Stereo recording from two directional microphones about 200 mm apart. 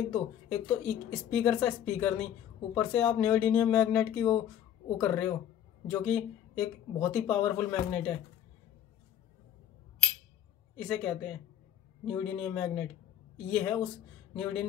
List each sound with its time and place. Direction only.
0.1 s a man's voice: 5° left (ahead or behind)
10.8 s a man's voice: 5° left (ahead or behind)